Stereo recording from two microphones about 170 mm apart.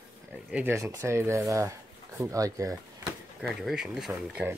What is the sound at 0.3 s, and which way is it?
Speech, 10° right (ahead or behind).